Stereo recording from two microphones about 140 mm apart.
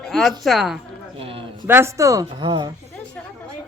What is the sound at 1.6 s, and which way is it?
Speech, 15° right (ahead or behind).